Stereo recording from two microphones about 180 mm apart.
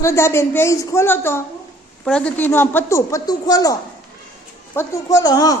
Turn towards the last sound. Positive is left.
turn(degrees=20)  # may be behind; listen again after turning